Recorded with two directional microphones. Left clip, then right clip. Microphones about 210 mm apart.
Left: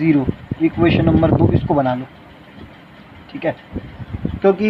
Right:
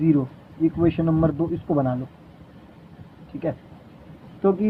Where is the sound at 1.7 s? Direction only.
20° left (ahead or behind).